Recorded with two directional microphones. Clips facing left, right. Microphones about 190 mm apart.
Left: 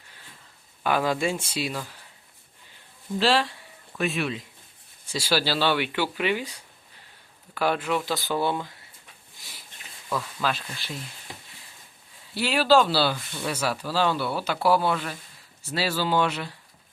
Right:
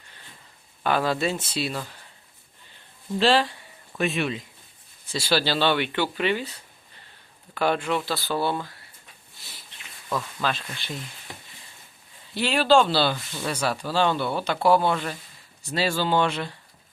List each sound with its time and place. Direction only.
0.9 s speech: 10° left (ahead or behind)
3.2 s speech: centre (ahead or behind); by 8.7 s 15° left (ahead or behind)
9.4 s a sound: 10° left (ahead or behind)
10.4 s speech: 5° left (ahead or behind)
12.3 s speech: 5° left (ahead or behind)